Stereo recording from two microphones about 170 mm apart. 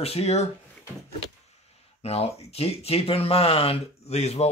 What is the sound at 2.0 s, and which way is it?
Speech, 40° left (ahead or behind).